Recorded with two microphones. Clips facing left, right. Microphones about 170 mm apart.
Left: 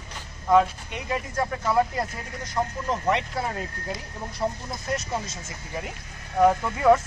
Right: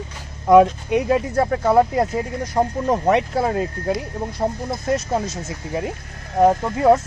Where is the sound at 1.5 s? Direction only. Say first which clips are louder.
Right 7 dB; 50° right (ahead or behind).